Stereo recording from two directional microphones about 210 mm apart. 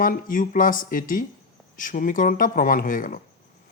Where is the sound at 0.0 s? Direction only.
40° left (ahead or behind).